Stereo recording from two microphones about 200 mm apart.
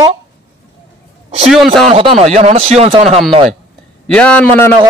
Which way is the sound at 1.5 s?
Centre (ahead or behind).